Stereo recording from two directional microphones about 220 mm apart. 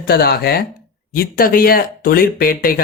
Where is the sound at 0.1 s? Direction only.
45° left (ahead or behind).